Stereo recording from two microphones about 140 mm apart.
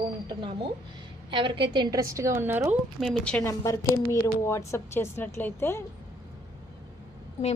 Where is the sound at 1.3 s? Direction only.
35° right (ahead or behind); by 2.7 s 15° right (ahead or behind).